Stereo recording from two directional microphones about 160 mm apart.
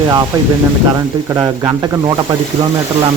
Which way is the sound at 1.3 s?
25° right (ahead or behind).